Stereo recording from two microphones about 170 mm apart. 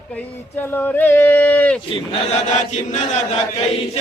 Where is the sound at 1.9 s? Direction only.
40° left (ahead or behind).